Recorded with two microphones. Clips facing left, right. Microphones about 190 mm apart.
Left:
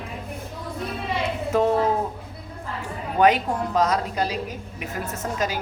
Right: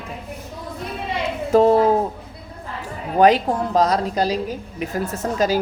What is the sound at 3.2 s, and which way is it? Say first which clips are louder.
Speech: right 4 dB; 35° right (ahead or behind).